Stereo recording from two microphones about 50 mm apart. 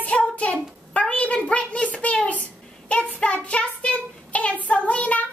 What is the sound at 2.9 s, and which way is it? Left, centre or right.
Child singing, left.